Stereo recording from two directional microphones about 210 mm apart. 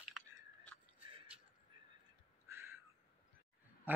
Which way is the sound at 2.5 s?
10° right (ahead or behind).